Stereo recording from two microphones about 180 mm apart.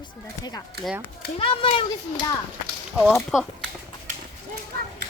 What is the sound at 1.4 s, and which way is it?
Speech, 30° left (ahead or behind).